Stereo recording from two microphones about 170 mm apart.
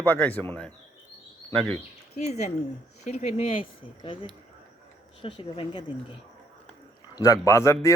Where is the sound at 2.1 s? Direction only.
40° left (ahead or behind).